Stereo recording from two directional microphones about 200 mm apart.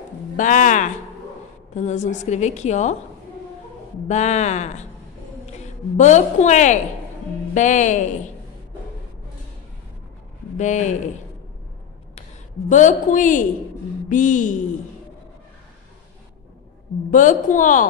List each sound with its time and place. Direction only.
0.4 s a woman's voice: 40° left (ahead or behind)
4.1 s a woman's voice: 35° left (ahead or behind)
10.6 s a woman's voice: 35° left (ahead or behind)
12.2 s a woman's voice: 40° left (ahead or behind)
17.1 s a woman's voice: 40° left (ahead or behind)